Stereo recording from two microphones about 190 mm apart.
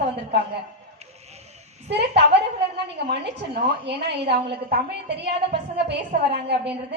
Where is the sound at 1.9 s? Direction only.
60° right (ahead or behind).